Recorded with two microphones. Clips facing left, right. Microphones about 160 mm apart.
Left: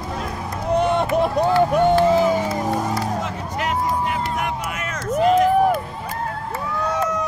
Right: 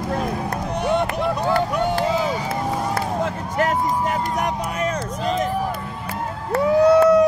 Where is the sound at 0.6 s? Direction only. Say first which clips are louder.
Left 4 dB; 55° left (ahead or behind).